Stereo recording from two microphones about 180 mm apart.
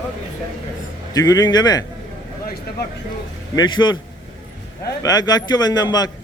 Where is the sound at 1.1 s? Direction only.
20° left (ahead or behind).